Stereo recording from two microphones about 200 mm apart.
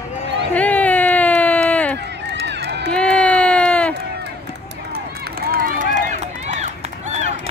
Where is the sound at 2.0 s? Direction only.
60° right (ahead or behind).